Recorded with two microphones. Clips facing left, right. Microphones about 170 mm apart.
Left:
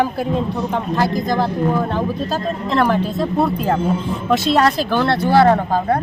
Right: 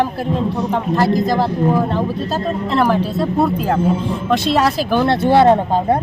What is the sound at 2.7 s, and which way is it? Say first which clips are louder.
A woman's voice: even; 5° right (ahead or behind).